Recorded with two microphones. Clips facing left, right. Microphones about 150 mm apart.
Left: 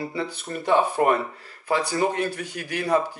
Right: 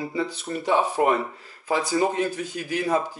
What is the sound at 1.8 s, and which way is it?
A man's voice, 65° left (ahead or behind).